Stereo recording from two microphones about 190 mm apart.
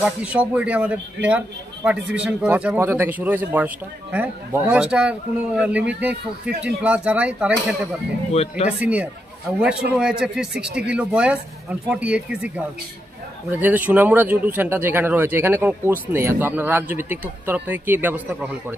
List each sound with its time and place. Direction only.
0.0 s speech: 5° right (ahead or behind)
8.3 s speech: 35° left (ahead or behind)
8.6 s speech: 5° right (ahead or behind)